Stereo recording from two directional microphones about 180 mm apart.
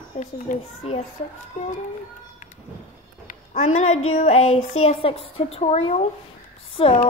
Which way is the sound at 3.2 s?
45° left (ahead or behind).